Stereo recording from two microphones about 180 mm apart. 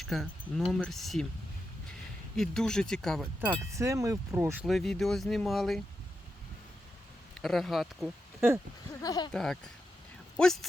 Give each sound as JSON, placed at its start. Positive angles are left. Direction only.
{"t": 0.0, "sound": "speech", "side_deg": 0}
{"t": 2.3, "sound": "speech", "side_deg": 0}
{"t": 3.8, "sound": "speech", "side_deg": -15}
{"t": 4.6, "sound": "speech", "side_deg": 0}
{"t": 7.3, "sound": "speech", "side_deg": 0}
{"t": 8.4, "sound": "speech", "side_deg": -10}
{"t": 9.0, "sound": "speech", "side_deg": 20}
{"t": 9.3, "sound": "speech", "side_deg": 5}